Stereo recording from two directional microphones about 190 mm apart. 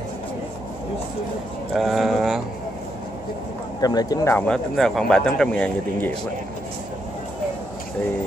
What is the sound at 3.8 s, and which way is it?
Speech, 20° left (ahead or behind).